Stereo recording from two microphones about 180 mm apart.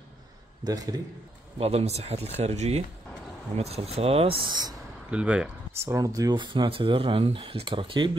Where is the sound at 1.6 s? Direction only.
35° right (ahead or behind).